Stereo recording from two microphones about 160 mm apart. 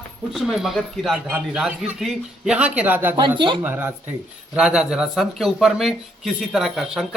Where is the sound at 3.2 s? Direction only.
30° right (ahead or behind).